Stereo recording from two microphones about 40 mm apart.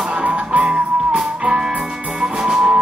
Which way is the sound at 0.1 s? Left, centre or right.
Right.